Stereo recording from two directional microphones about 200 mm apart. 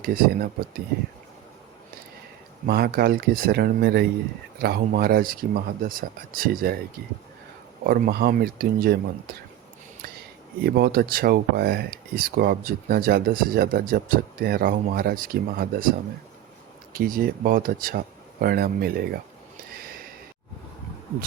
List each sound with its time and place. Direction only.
0.0 s speech: 45° right (ahead or behind)
2.6 s speech: 50° right (ahead or behind)
7.9 s speech: 50° right (ahead or behind)
10.6 s speech: 50° right (ahead or behind)
16.9 s speech: 45° right (ahead or behind)
19.7 s a sound: 45° right (ahead or behind)